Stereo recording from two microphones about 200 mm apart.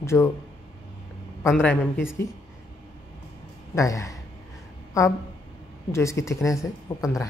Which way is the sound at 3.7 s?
15° left (ahead or behind).